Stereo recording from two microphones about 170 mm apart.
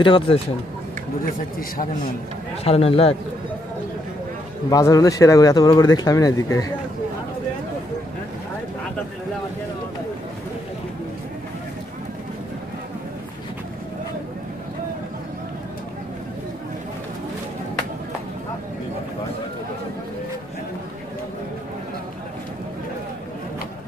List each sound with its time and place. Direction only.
0.0 s speech: 30° left (ahead or behind)
2.6 s speech: 35° left (ahead or behind)
4.6 s speech: 20° left (ahead or behind)